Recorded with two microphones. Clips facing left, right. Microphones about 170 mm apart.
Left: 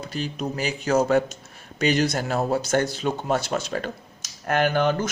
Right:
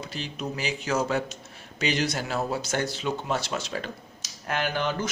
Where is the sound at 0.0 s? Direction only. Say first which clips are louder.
Left 5 dB; 45° left (ahead or behind).